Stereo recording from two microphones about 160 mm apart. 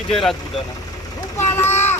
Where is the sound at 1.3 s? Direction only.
15° left (ahead or behind).